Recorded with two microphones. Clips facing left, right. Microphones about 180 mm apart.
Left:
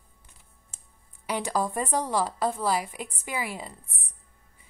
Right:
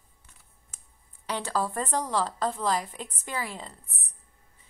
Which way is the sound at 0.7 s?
30° left (ahead or behind).